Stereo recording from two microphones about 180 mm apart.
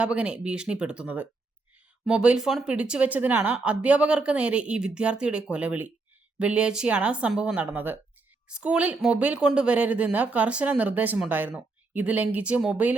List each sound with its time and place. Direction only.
0.0 s speech: 5° right (ahead or behind)